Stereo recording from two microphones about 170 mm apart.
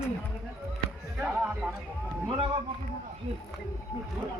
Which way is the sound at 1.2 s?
5° right (ahead or behind).